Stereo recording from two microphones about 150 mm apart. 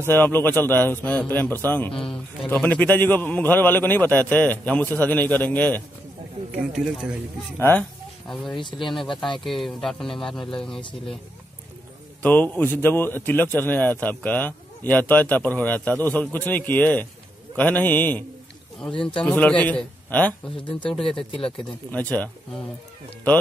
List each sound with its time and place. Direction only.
0.1 s a man's voice: 15° left (ahead or behind)
6.5 s speech: 5° right (ahead or behind)
7.5 s a man's voice: 15° left (ahead or behind)
8.7 s speech: centre (ahead or behind)
12.2 s a man's voice: 10° left (ahead or behind)